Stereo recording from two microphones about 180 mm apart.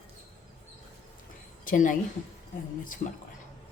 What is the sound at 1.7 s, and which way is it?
Speech, 45° left (ahead or behind).